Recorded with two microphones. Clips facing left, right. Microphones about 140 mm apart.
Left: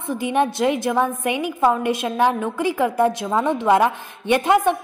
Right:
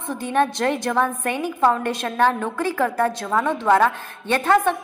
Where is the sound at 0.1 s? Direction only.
15° left (ahead or behind).